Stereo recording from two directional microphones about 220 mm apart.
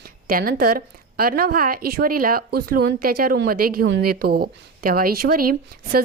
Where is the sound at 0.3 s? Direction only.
40° right (ahead or behind).